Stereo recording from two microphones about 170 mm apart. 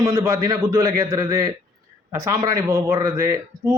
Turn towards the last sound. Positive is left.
turn(degrees=-20)  # may be behind; listen again after turning